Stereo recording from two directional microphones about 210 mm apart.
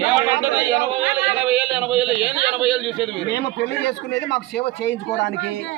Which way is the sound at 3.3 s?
55° left (ahead or behind).